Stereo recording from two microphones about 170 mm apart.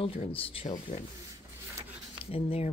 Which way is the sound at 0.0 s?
35° left (ahead or behind).